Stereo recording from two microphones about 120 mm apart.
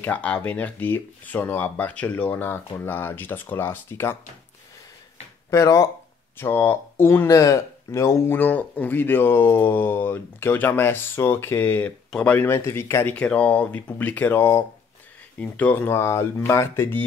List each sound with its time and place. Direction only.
0.0 s speech: 10° left (ahead or behind)
5.5 s speech: 25° left (ahead or behind)
13.1 s speech: 10° left (ahead or behind)